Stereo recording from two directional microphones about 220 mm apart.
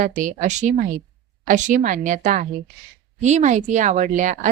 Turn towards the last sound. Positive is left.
turn(degrees=-35)  # may be behind; listen again after turning